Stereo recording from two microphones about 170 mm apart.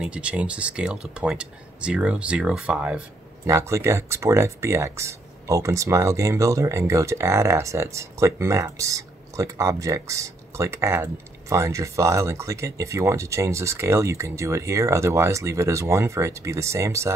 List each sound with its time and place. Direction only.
0.0 s speech: 5° right (ahead or behind)